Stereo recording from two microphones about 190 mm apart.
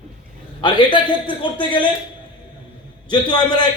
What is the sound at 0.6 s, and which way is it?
Speech, 25° left (ahead or behind).